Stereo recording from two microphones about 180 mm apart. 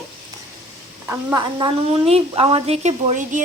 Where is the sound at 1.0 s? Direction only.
20° right (ahead or behind).